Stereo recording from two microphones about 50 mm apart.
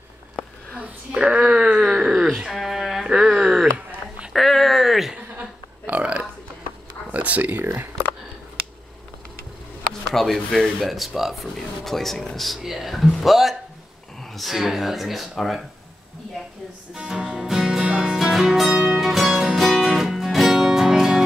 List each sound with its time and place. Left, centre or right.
0.7 s a sound: right
2.3 s dog: centre
3.1 s a sound: centre
4.3 s a sound: centre
5.1 s burping: right
7.1 s speech: right
7.6 s speech: right
10.1 s speech: centre
16.9 s music: centre